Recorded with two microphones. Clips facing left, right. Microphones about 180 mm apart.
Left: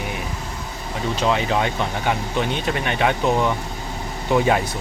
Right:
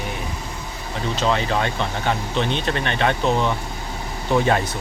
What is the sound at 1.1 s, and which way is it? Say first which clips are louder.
Speech: left 1 dB; 15° left (ahead or behind).